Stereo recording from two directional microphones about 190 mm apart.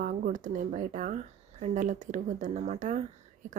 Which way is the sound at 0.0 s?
45° right (ahead or behind).